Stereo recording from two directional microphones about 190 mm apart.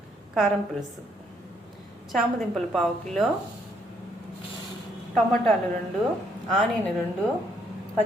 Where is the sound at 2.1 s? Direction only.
Centre (ahead or behind).